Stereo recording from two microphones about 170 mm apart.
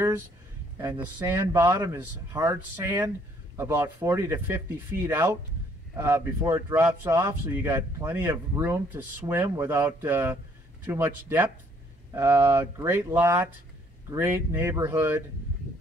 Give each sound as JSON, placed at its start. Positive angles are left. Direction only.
{"t": 1.0, "sound": "speech", "side_deg": -15}